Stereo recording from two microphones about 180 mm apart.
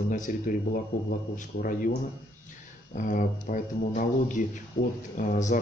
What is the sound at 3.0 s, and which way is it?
Speech, 45° left (ahead or behind).